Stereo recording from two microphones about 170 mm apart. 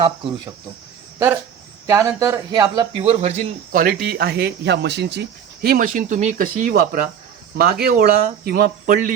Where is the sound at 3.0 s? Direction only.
40° right (ahead or behind).